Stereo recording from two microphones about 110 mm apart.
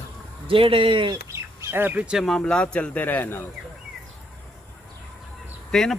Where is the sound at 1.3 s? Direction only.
20° right (ahead or behind).